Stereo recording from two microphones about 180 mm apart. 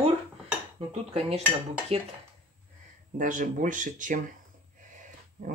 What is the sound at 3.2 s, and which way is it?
Speech, 45° right (ahead or behind).